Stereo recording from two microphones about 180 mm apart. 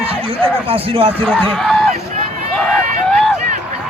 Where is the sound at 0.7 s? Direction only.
30° right (ahead or behind).